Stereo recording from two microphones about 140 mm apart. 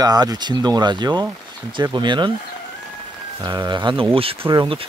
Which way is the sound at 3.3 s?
30° right (ahead or behind).